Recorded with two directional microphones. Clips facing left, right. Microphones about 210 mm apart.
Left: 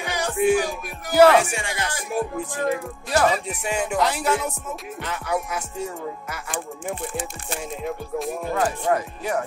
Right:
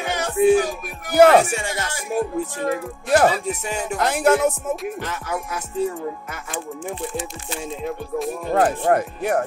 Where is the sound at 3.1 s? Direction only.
40° right (ahead or behind).